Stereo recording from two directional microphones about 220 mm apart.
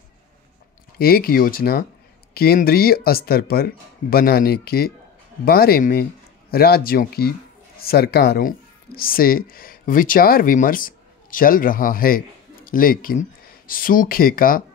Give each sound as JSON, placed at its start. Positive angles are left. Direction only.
{"t": 0.9, "sound": "speech", "side_deg": 45}